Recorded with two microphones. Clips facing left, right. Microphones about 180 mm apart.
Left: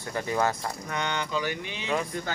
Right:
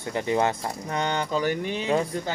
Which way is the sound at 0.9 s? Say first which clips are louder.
Right 4 dB; 40° right (ahead or behind).